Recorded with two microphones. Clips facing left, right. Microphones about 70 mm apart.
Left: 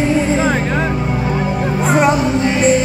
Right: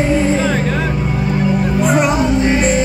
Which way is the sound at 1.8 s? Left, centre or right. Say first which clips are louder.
Left 1 dB; left.